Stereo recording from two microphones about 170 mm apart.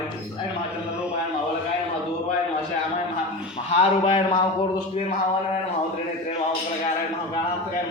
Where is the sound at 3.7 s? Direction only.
35° left (ahead or behind).